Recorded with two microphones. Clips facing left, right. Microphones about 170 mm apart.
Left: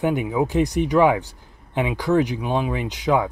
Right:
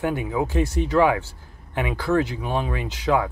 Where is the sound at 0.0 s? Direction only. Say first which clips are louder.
Left 3 dB; 20° left (ahead or behind).